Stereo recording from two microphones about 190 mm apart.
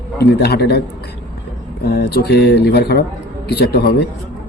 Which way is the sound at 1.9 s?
60° left (ahead or behind).